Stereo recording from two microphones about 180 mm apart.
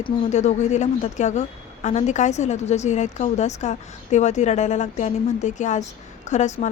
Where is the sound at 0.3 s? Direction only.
40° left (ahead or behind).